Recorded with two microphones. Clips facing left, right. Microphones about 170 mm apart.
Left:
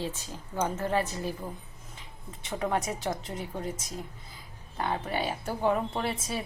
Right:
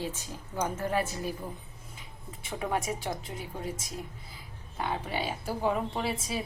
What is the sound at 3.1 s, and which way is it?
Speech, centre (ahead or behind).